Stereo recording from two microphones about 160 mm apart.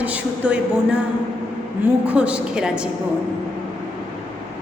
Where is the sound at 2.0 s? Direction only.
5° right (ahead or behind).